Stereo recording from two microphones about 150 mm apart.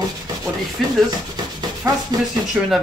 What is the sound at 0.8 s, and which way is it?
Rub, centre (ahead or behind).